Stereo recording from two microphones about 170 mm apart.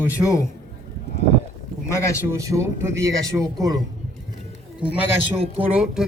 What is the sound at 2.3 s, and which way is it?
A man's voice, 20° right (ahead or behind).